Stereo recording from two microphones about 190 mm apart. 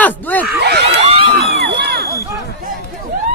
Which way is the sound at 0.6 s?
60° right (ahead or behind).